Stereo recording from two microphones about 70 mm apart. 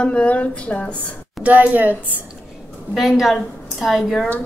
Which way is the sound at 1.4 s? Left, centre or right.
Right.